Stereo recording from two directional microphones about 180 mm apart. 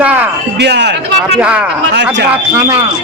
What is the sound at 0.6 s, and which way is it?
Speech, 70° right (ahead or behind).